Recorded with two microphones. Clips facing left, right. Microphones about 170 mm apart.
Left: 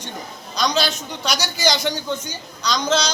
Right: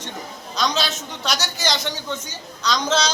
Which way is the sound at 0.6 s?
Centre (ahead or behind).